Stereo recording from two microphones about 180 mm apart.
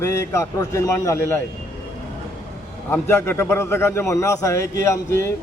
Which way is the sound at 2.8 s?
15° left (ahead or behind).